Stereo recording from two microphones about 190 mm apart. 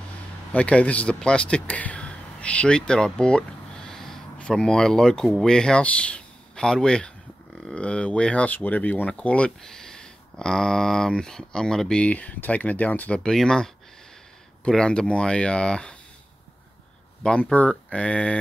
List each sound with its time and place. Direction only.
0.5 s speech: 5° left (ahead or behind)
17.2 s speech: 5° left (ahead or behind)